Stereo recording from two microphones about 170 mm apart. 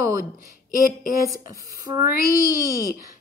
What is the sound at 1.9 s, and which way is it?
Speech, 25° right (ahead or behind).